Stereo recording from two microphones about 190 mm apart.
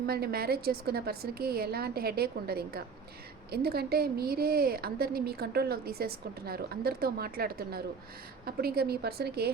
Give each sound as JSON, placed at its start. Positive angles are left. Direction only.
{"t": 0.0, "sound": "a woman's voice", "side_deg": -55}